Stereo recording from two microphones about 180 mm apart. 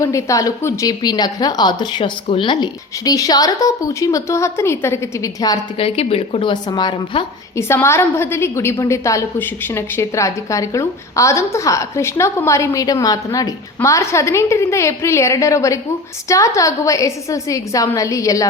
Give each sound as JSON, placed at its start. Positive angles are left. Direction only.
{"t": 0.0, "sound": "a woman's voice", "side_deg": 15}
{"t": 5.7, "sound": "a woman's voice", "side_deg": 35}
{"t": 7.5, "sound": "a woman's voice", "side_deg": 15}